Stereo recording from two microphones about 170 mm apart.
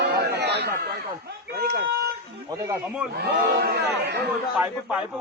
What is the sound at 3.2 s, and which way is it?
Speech, 70° right (ahead or behind).